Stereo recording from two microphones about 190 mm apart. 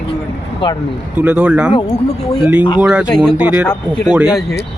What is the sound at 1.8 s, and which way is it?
Speech, 25° left (ahead or behind).